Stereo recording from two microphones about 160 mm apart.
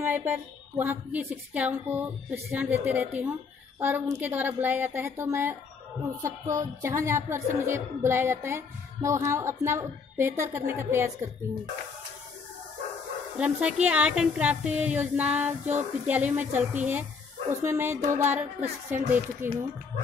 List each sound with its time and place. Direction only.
0.0 s a woman's voice: 15° right (ahead or behind)
13.4 s a woman's voice: 5° right (ahead or behind)